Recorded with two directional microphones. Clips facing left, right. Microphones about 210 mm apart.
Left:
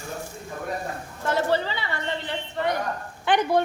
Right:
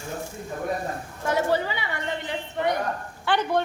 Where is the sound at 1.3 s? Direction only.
15° right (ahead or behind).